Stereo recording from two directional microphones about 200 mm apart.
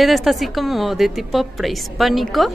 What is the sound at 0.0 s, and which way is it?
A woman's voice, centre (ahead or behind).